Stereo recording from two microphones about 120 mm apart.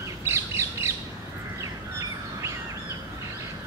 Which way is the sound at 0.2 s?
25° right (ahead or behind).